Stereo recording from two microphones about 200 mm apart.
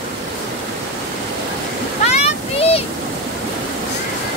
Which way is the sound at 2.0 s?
30° left (ahead or behind).